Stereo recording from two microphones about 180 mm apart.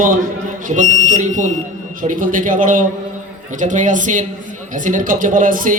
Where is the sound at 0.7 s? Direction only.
45° right (ahead or behind).